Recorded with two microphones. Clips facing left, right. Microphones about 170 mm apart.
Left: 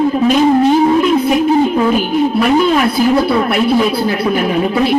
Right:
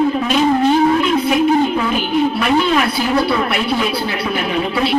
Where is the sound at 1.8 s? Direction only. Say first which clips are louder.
Left 4 dB; 40° left (ahead or behind).